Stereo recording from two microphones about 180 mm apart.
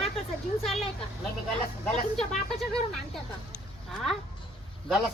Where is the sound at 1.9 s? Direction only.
5° left (ahead or behind).